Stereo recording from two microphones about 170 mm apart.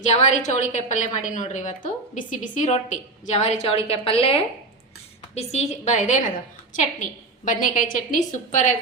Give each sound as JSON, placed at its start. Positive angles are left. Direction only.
{"t": 0.0, "sound": "a woman's voice", "side_deg": 45}